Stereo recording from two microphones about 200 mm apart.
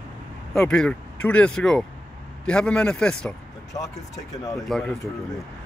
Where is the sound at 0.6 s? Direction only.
5° left (ahead or behind).